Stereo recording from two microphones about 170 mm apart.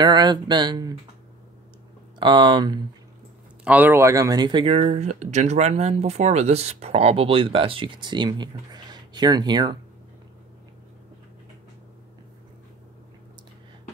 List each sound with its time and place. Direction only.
0.0 s speech: 25° right (ahead or behind)
2.1 s speech: 25° right (ahead or behind)
3.6 s speech: 10° right (ahead or behind); by 4.8 s 30° right (ahead or behind)
4.8 s speech: 45° right (ahead or behind); by 9.8 s 25° right (ahead or behind)